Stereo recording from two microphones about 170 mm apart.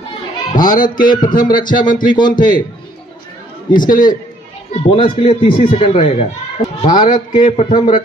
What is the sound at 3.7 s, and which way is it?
Speech, 55° left (ahead or behind).